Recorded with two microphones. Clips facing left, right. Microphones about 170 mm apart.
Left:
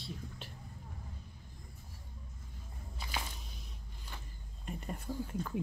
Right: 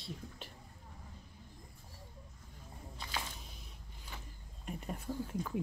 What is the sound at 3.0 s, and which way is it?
Walk, 5° left (ahead or behind).